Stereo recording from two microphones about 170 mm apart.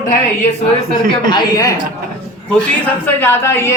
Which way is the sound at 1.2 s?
25° left (ahead or behind).